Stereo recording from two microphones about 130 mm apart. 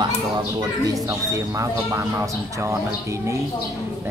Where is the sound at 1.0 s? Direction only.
25° right (ahead or behind).